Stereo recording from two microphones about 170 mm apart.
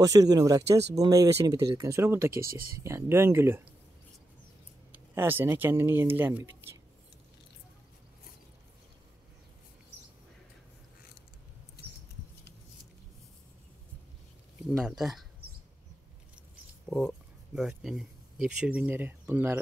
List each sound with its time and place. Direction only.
0.0 s speech: 20° right (ahead or behind)
4.9 s speech: 10° right (ahead or behind)
14.9 s speech: centre (ahead or behind)
16.8 s speech: centre (ahead or behind)